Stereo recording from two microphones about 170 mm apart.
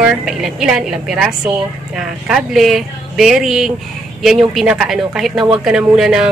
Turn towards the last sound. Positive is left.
turn(degrees=-5)  # may be behind; listen again after turning